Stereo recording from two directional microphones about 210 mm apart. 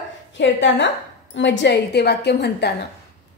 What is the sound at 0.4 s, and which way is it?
A woman's voice, 60° left (ahead or behind).